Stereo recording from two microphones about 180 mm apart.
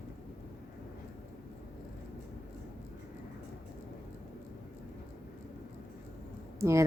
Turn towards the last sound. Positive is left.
turn(degrees=-15)  # may be behind; listen again after turning